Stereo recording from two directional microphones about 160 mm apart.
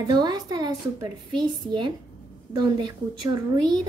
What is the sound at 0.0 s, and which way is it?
A woman's voice, 25° right (ahead or behind).